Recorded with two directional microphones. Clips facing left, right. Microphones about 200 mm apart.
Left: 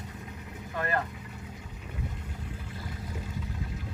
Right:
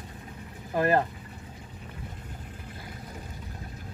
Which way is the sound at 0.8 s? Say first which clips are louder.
Right 7 dB; 30° right (ahead or behind).